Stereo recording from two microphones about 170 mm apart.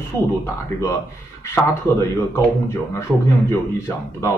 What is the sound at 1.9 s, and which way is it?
Speech, 15° left (ahead or behind).